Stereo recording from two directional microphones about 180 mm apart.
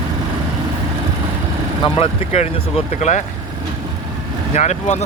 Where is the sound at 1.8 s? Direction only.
35° left (ahead or behind).